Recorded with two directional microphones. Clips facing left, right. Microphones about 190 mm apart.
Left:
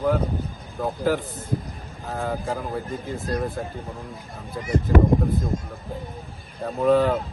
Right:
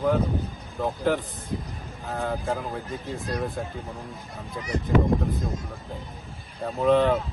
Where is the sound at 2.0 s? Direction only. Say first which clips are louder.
Left 1 dB; centre (ahead or behind).